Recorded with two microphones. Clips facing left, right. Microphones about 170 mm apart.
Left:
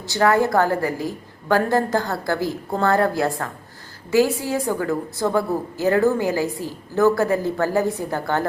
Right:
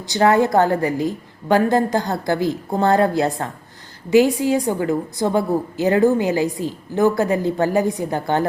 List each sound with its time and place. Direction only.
0.1 s a woman's voice: 20° right (ahead or behind)